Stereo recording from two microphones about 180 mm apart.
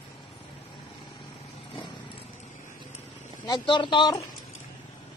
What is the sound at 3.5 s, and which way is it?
Speech, 25° left (ahead or behind).